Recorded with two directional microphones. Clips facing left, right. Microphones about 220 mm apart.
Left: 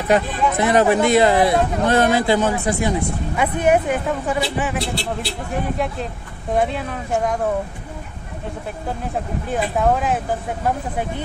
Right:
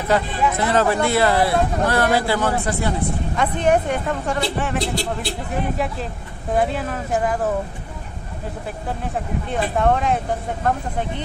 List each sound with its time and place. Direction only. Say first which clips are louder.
0.1 s speech: left 2 dB; 15° left (ahead or behind)
6.5 s speech: even; centre (ahead or behind)
9.5 s speech: even; 5° left (ahead or behind)